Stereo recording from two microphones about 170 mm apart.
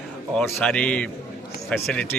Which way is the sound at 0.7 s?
5° left (ahead or behind).